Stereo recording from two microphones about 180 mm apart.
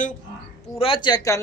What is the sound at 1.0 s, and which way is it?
Speech, 20° left (ahead or behind).